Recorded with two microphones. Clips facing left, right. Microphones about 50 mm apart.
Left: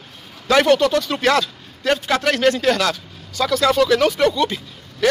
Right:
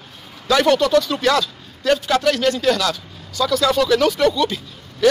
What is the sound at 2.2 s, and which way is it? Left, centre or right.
Speech, left.